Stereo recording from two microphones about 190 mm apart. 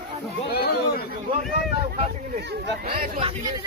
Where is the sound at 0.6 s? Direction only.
55° left (ahead or behind).